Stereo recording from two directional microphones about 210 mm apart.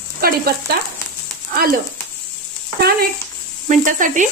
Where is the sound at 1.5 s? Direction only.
45° right (ahead or behind).